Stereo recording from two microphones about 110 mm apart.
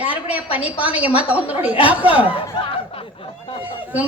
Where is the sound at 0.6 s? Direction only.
15° right (ahead or behind).